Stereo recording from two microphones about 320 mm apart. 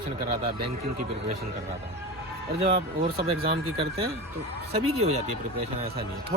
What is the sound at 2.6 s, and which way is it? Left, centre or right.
Speech, centre.